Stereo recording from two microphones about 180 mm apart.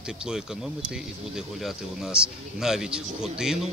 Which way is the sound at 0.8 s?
5° right (ahead or behind).